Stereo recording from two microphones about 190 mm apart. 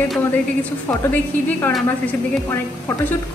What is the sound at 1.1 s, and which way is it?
A woman's voice, 10° left (ahead or behind).